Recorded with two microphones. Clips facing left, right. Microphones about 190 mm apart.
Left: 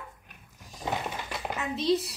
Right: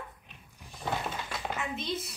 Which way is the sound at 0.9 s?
10° left (ahead or behind).